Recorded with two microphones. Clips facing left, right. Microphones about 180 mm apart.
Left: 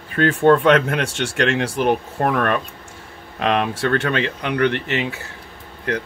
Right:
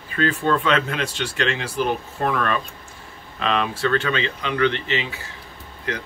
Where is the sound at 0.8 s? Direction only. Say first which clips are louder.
Left 4 dB; 55° left (ahead or behind).